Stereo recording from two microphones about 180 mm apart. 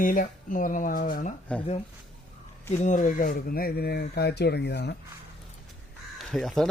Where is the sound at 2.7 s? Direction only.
40° left (ahead or behind); by 4.9 s 70° left (ahead or behind).